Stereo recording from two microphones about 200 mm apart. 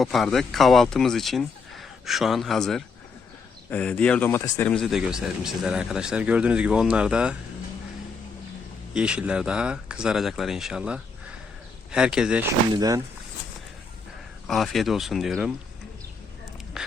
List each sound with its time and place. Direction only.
0.0 s speech: centre (ahead or behind)
8.9 s speech: 5° right (ahead or behind)
12.7 s speech: 20° right (ahead or behind)
14.4 s speech: centre (ahead or behind)
16.8 s a sound: centre (ahead or behind)